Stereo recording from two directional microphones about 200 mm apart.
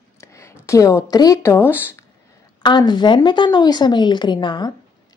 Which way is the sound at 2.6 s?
20° left (ahead or behind).